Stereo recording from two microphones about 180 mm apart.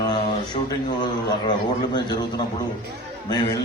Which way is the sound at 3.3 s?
20° left (ahead or behind).